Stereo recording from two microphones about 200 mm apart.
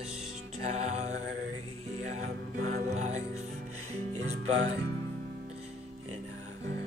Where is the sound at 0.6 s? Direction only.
35° right (ahead or behind).